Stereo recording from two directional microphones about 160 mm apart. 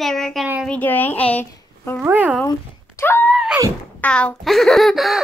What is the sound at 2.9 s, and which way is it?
Screaming, 15° left (ahead or behind).